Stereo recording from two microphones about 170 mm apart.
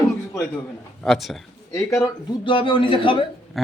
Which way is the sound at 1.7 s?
20° left (ahead or behind).